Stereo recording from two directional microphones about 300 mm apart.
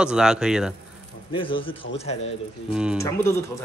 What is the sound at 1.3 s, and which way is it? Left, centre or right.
Speech, centre.